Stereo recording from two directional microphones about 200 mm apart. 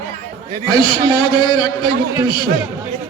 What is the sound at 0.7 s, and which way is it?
A man's voice, 25° left (ahead or behind).